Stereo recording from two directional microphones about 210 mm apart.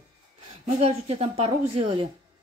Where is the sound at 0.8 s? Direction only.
30° right (ahead or behind).